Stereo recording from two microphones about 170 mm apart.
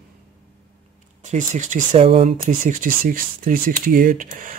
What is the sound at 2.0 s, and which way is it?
Speech, 35° right (ahead or behind).